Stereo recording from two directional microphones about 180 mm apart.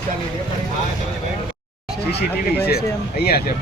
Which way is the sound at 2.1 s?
65° left (ahead or behind).